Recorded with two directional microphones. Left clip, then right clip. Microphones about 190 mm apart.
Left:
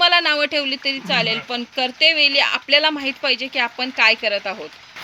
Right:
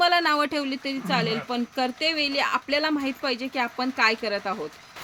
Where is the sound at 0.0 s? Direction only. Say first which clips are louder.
Left 5 dB; 60° right (ahead or behind).